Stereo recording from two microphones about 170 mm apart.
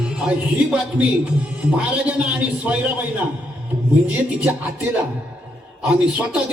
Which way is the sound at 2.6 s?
10° right (ahead or behind).